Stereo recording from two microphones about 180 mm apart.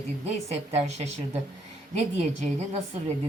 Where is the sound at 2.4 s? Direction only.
35° right (ahead or behind).